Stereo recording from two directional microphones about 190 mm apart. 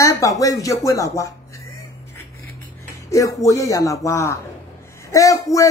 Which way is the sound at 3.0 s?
15° left (ahead or behind).